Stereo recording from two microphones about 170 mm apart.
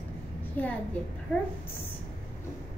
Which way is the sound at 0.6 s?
10° left (ahead or behind).